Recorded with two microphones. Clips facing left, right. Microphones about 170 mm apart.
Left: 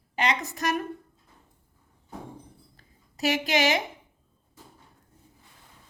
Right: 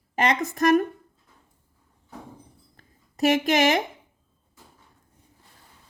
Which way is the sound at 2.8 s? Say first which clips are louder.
Right 8 dB; 50° right (ahead or behind).